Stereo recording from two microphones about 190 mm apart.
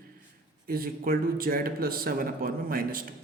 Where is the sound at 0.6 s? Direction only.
50° right (ahead or behind).